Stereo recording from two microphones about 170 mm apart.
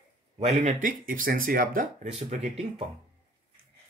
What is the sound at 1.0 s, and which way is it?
Speech, 55° right (ahead or behind).